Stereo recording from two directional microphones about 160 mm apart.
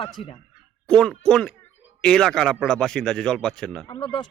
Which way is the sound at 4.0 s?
30° left (ahead or behind).